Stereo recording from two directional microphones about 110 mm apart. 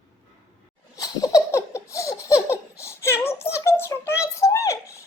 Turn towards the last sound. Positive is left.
turn(degrees=30)  # may be behind; listen again after turning